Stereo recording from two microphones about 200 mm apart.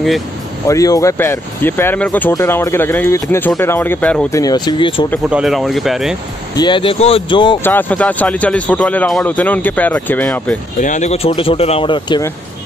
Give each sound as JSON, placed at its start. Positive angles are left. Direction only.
{"t": 0.7, "sound": "speech", "side_deg": 15}
{"t": 4.4, "sound": "speech", "side_deg": 20}
{"t": 5.3, "sound": "speech", "side_deg": 0}
{"t": 6.5, "sound": "speech", "side_deg": 20}
{"t": 7.6, "sound": "speech", "side_deg": 10}
{"t": 10.8, "sound": "speech", "side_deg": 35}